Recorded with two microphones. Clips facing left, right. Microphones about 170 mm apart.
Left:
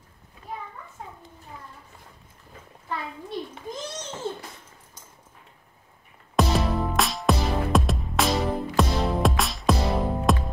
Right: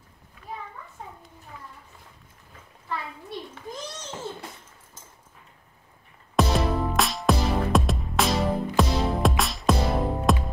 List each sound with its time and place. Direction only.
6.3 s music: centre (ahead or behind)